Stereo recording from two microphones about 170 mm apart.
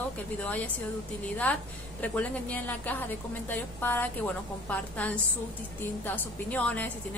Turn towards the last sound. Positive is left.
turn(degrees=10)  # may be behind; listen again after turning